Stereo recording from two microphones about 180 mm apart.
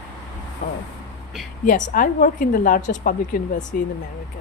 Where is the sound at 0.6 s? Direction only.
45° left (ahead or behind).